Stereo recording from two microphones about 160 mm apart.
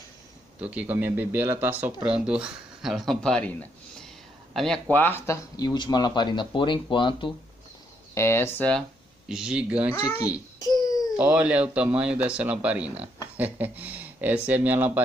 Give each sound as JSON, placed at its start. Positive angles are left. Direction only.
{"t": 0.6, "sound": "a man's voice", "side_deg": -10}
{"t": 8.1, "sound": "speech", "side_deg": 15}
{"t": 9.3, "sound": "speech", "side_deg": -5}
{"t": 10.6, "sound": "a sound", "side_deg": 25}
{"t": 11.1, "sound": "a man's voice", "side_deg": -10}